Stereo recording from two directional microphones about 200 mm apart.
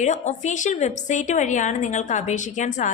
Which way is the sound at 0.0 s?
35° left (ahead or behind).